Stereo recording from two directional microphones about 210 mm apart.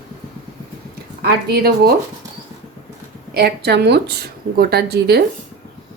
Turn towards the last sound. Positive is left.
turn(degrees=-50)  # may be behind; listen again after turning